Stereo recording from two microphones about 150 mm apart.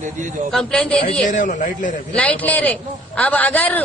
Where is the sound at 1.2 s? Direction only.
60° left (ahead or behind).